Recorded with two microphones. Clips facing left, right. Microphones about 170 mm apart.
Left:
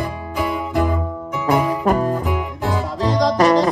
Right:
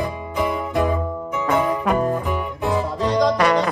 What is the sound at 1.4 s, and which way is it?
Music, 40° left (ahead or behind).